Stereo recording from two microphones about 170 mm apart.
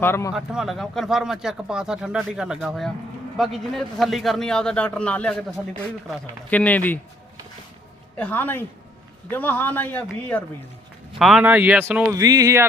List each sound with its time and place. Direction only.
0.0 s a man's voice: 15° left (ahead or behind)
0.3 s a man's voice: centre (ahead or behind)
8.1 s a man's voice: 10° left (ahead or behind)
11.2 s speech: centre (ahead or behind)
12.1 s speech: 20° right (ahead or behind)